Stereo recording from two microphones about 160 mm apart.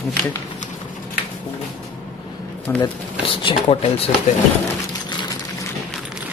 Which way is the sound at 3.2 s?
35° left (ahead or behind).